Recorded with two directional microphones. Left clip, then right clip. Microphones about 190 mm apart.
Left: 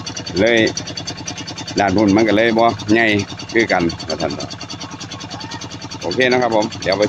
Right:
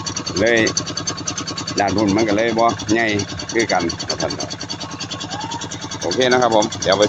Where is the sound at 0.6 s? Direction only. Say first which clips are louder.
Even; 40° right (ahead or behind).